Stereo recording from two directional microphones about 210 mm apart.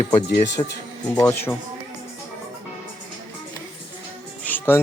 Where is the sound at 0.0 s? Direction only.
20° left (ahead or behind).